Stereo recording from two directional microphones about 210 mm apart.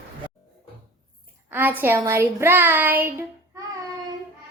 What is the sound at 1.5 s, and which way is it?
A child's voice, 10° right (ahead or behind).